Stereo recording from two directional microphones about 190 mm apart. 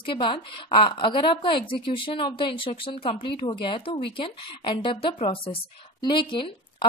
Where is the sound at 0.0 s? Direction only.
25° left (ahead or behind).